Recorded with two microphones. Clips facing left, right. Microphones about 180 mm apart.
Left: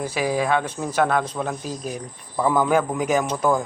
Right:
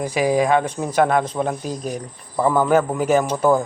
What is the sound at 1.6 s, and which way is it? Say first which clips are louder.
Speech: right 3 dB; 45° right (ahead or behind).